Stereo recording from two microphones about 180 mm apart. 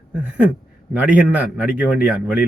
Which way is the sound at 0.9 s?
10° right (ahead or behind).